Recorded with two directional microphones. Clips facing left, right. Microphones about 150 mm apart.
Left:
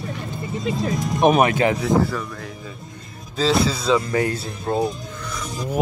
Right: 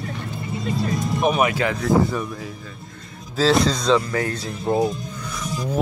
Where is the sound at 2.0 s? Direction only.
20° right (ahead or behind).